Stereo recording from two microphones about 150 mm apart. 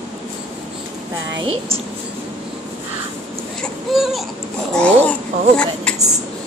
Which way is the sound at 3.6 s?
Centre (ahead or behind).